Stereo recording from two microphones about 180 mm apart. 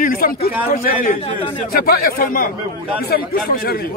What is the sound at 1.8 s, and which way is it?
Speech, 60° left (ahead or behind).